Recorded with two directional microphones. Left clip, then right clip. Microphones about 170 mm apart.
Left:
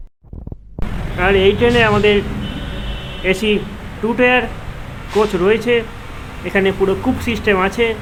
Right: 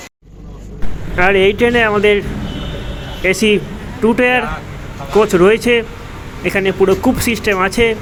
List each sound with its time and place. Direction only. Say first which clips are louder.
1.1 s speech: right 2 dB; 35° right (ahead or behind)
3.2 s speech: right 3 dB; 25° right (ahead or behind)